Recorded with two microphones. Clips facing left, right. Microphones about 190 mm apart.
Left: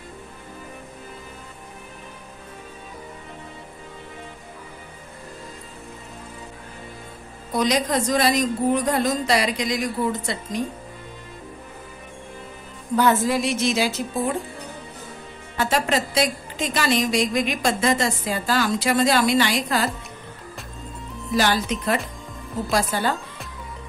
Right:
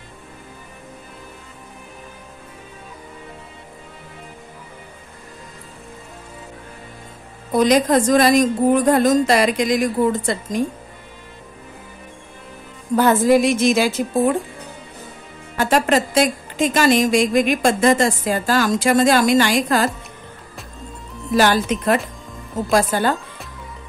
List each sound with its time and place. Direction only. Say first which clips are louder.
7.5 s a woman's voice: right 7 dB; 50° right (ahead or behind)
12.9 s a woman's voice: right 5 dB; 50° right (ahead or behind)
15.5 s a woman's voice: right 5 dB; 50° right (ahead or behind)
21.4 s a woman's voice: right 5 dB; 50° right (ahead or behind)